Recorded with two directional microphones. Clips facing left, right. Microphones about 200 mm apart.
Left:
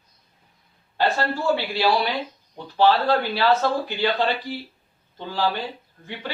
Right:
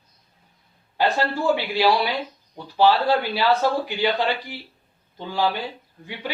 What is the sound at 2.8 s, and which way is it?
Speech, 10° right (ahead or behind).